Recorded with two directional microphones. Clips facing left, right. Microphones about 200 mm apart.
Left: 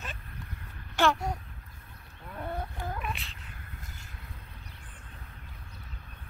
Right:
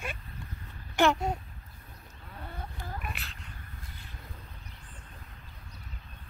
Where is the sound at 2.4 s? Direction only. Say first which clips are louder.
Left 7 dB; 55° left (ahead or behind).